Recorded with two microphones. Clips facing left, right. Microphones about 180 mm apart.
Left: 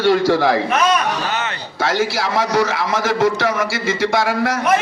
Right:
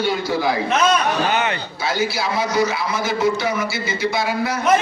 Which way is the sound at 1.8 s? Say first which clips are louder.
Left 4 dB; 90° left.